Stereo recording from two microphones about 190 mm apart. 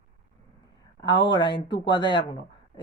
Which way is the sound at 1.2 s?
25° left (ahead or behind).